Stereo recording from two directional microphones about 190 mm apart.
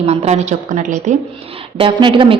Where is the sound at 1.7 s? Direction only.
25° right (ahead or behind).